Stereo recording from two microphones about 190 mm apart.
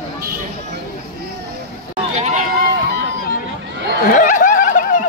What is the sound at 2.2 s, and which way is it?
Run, 40° right (ahead or behind).